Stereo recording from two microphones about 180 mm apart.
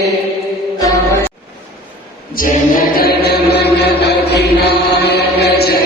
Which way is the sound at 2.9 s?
60° left (ahead or behind).